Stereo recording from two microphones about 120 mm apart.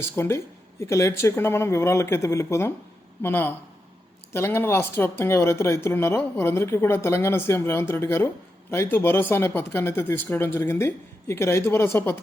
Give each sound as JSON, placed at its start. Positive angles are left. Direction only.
{"t": 0.0, "sound": "speech", "side_deg": 20}